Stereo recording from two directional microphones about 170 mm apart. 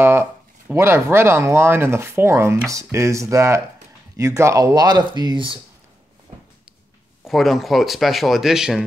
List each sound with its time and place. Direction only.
0.0 s speech: 15° right (ahead or behind)
7.2 s speech: centre (ahead or behind)